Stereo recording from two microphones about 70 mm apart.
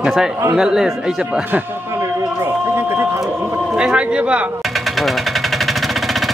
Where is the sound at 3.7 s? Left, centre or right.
Centre.